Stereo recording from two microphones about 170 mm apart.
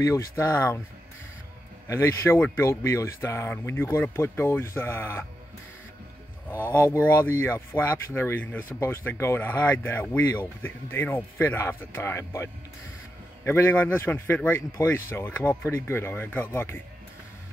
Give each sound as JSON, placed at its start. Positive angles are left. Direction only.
{"t": 0.0, "sound": "speech", "side_deg": 15}
{"t": 1.9, "sound": "speech", "side_deg": 15}
{"t": 6.5, "sound": "speech", "side_deg": 10}